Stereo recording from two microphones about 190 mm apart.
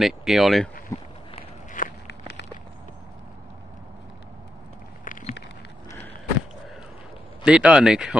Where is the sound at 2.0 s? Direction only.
65° left (ahead or behind).